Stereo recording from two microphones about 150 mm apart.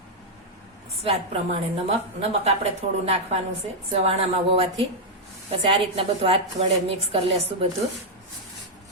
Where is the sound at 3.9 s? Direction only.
45° right (ahead or behind).